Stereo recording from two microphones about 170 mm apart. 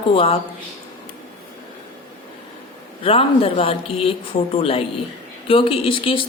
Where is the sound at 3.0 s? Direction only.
30° left (ahead or behind).